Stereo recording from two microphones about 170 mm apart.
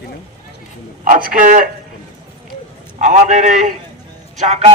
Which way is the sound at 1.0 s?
55° right (ahead or behind).